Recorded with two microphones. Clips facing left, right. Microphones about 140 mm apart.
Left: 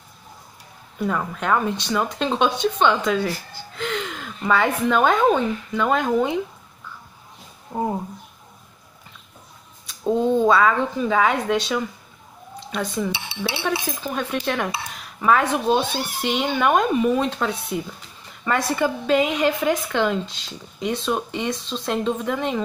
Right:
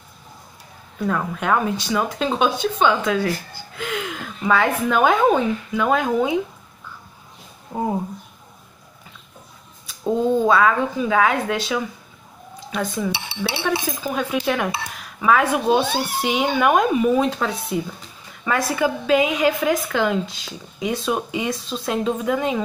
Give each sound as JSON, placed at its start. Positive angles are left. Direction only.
{"t": 0.9, "sound": "speech", "side_deg": 5}
{"t": 7.7, "sound": "speech", "side_deg": -5}
{"t": 9.8, "sound": "speech", "side_deg": -5}